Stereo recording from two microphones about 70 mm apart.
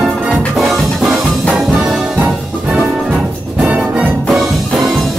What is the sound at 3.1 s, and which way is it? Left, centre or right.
Music, centre.